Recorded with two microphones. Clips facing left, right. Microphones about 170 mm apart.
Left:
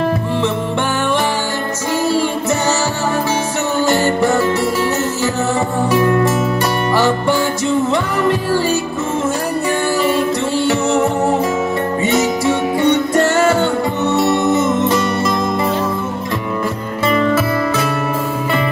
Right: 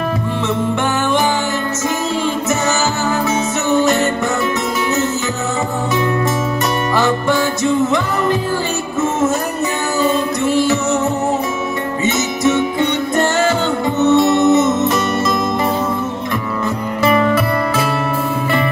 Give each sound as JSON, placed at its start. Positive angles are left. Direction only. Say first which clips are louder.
{"t": 14.1, "sound": "music", "louder": "right 3 dB", "side_deg": -20}